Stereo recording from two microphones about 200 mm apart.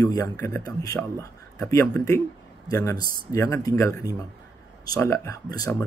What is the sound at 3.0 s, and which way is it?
Speech, 45° right (ahead or behind).